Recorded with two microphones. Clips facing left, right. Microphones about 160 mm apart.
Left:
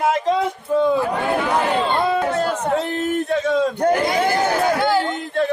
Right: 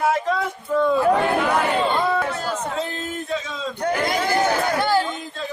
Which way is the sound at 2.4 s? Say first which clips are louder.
Left 6 dB; 65° left (ahead or behind).